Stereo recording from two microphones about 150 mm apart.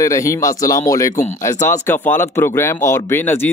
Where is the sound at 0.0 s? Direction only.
20° left (ahead or behind).